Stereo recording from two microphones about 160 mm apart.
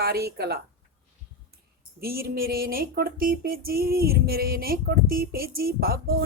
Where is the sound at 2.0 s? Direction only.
70° right (ahead or behind).